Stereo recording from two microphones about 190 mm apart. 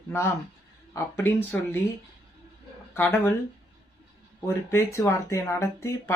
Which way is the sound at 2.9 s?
10° left (ahead or behind).